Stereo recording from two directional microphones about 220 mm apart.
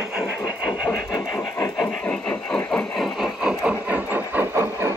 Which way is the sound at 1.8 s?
5° left (ahead or behind).